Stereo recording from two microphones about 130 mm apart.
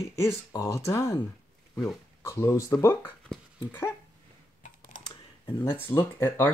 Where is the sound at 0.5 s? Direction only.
25° left (ahead or behind).